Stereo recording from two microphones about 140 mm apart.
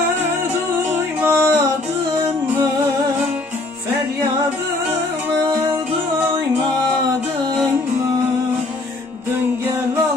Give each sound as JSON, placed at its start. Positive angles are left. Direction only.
{"t": 1.2, "sound": "music", "side_deg": -20}